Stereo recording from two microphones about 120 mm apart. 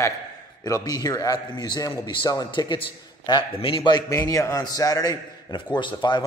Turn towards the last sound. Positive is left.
turn(degrees=40)  # may be behind; listen again after turning